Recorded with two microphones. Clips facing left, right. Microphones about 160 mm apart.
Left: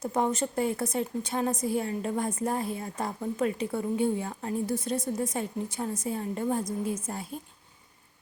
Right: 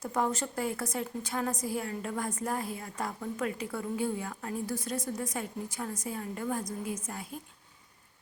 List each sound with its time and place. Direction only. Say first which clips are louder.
0.0 s a woman's voice: left 3 dB; 20° left (ahead or behind)